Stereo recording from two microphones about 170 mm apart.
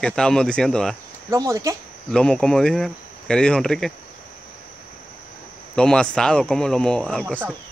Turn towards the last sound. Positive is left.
turn(degrees=5)  # may be behind; listen again after turning